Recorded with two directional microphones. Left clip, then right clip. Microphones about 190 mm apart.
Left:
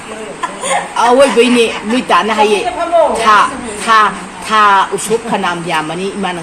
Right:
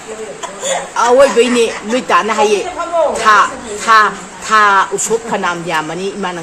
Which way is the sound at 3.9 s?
25° right (ahead or behind).